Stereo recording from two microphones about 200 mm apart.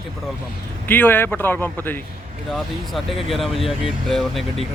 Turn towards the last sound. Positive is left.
turn(degrees=0)  # may be behind; listen again after turning